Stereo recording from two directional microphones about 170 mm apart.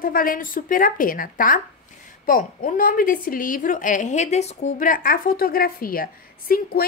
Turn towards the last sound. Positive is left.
turn(degrees=60)  # may be behind; listen again after turning